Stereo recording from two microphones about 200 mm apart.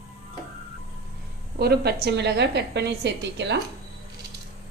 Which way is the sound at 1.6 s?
55° right (ahead or behind).